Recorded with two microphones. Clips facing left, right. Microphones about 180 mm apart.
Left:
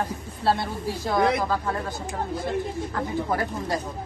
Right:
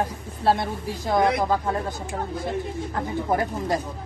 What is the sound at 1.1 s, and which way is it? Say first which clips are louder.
Speech: right 2 dB; 20° right (ahead or behind).